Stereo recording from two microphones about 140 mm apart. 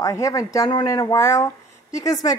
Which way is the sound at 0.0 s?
25° left (ahead or behind).